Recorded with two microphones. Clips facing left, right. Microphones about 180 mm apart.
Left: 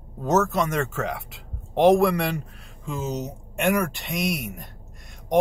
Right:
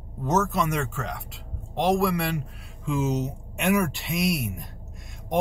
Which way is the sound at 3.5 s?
5° right (ahead or behind).